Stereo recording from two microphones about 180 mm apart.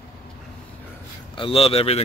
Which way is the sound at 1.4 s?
30° left (ahead or behind).